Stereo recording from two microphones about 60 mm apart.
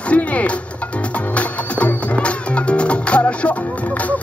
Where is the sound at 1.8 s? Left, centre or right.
Left.